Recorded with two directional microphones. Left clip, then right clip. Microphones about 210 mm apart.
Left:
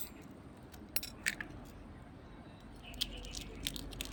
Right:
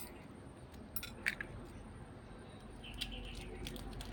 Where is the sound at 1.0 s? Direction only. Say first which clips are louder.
Left 1 dB; 20° left (ahead or behind).